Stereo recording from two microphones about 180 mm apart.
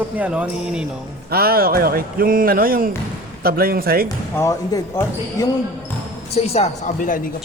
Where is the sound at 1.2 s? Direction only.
60° right (ahead or behind).